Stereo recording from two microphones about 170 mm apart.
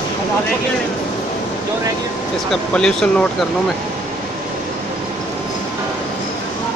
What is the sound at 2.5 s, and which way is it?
Speech, 5° left (ahead or behind).